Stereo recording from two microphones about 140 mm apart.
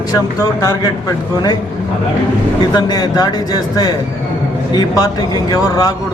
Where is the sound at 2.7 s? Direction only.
30° left (ahead or behind).